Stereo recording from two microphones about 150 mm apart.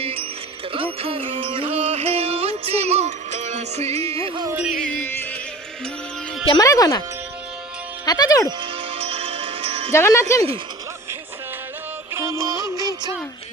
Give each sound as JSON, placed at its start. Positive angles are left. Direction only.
{"t": 0.0, "sound": "music", "side_deg": -40}
{"t": 4.5, "sound": "music", "side_deg": -10}
{"t": 4.8, "sound": "music", "side_deg": 10}
{"t": 6.5, "sound": "speech", "side_deg": 25}
{"t": 8.0, "sound": "speech", "side_deg": 25}
{"t": 8.4, "sound": "music", "side_deg": -35}
{"t": 9.9, "sound": "speech", "side_deg": 20}
{"t": 12.1, "sound": "music", "side_deg": -20}